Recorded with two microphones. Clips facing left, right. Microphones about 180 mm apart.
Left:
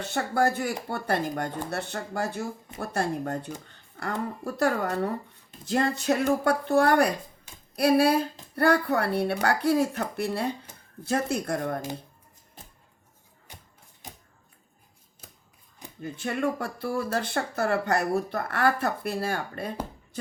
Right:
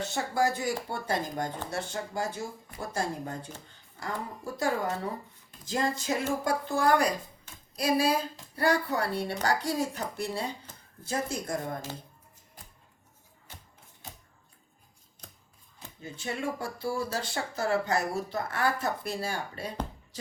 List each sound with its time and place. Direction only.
0.0 s speech: 60° left (ahead or behind)
12.6 s music: 25° left (ahead or behind)
13.5 s a sound: 15° left (ahead or behind)
15.2 s scissors: 5° left (ahead or behind)
16.0 s speech: 55° left (ahead or behind)